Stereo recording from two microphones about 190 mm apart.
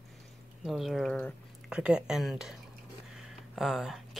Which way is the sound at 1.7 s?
5° right (ahead or behind).